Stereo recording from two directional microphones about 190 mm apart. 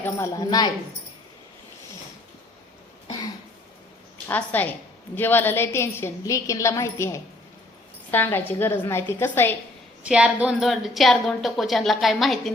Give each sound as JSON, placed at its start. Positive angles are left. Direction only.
{"t": 0.0, "sound": "a woman's voice", "side_deg": 15}
{"t": 4.3, "sound": "a woman's voice", "side_deg": 10}
{"t": 10.0, "sound": "a woman's voice", "side_deg": -5}